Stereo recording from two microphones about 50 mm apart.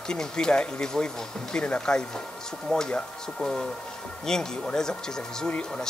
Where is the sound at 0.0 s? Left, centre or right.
Centre.